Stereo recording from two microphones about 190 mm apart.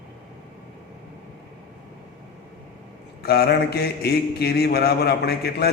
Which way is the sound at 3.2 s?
55° left (ahead or behind).